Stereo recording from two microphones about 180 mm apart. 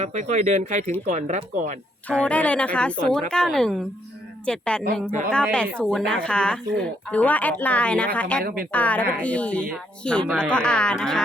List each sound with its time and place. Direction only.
0.0 s speech: 40° right (ahead or behind)
2.0 s speech: 5° left (ahead or behind)